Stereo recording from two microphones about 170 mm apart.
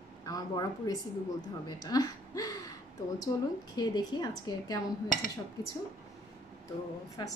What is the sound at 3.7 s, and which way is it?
A woman's voice, 25° left (ahead or behind).